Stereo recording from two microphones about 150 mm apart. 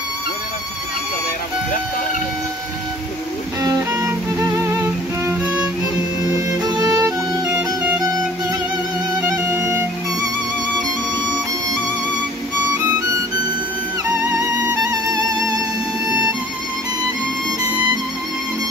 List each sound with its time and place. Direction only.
3.6 s music: 20° right (ahead or behind)
6.3 s music: 25° right (ahead or behind)
9.5 s music: 15° right (ahead or behind)
14.2 s music: 20° right (ahead or behind)